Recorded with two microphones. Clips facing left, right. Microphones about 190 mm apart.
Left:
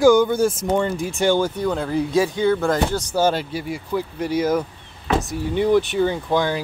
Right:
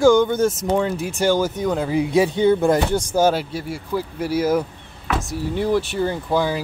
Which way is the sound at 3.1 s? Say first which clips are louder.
Right 2 dB; 10° right (ahead or behind).